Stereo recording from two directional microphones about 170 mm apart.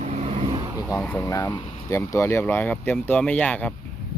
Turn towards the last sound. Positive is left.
turn(degrees=10)  # may be behind; listen again after turning